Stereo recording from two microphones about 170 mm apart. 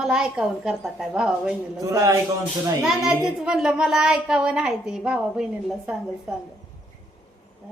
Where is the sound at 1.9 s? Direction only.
20° right (ahead or behind).